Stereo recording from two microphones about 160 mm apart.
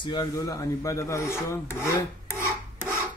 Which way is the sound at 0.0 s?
25° left (ahead or behind).